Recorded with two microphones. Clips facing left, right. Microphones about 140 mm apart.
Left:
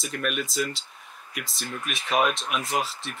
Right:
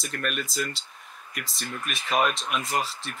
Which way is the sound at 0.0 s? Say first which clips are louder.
Left 2 dB; centre (ahead or behind).